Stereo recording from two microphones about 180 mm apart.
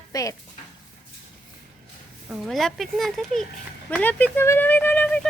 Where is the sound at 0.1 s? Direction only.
20° left (ahead or behind).